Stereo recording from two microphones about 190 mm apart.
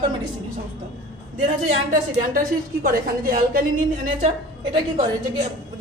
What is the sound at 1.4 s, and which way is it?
A woman's voice, 45° right (ahead or behind).